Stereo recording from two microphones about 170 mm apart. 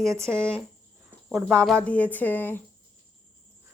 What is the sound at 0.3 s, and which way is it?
A woman's voice, 5° right (ahead or behind).